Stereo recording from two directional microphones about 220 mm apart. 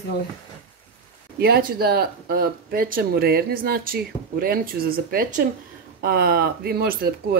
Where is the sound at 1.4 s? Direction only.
40° right (ahead or behind).